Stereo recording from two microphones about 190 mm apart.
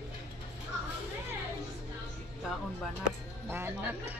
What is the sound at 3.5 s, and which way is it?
Speech, 10° right (ahead or behind).